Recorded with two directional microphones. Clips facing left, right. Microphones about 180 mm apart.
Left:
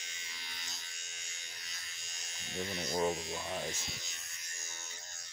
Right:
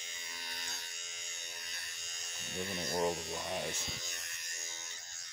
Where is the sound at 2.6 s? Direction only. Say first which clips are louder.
Even; 50° right (ahead or behind).